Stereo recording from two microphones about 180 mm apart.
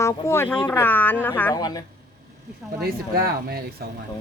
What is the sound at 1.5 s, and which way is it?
Speech, 20° left (ahead or behind).